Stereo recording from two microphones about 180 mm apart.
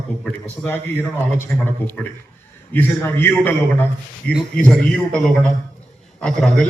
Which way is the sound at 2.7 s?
10° left (ahead or behind).